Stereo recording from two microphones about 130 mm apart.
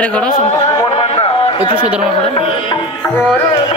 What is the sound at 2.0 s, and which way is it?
Carnatic music, 45° left (ahead or behind).